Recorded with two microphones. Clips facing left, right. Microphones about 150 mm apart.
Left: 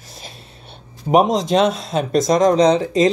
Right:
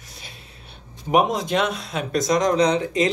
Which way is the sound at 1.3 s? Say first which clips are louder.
Left 6 dB; 30° left (ahead or behind).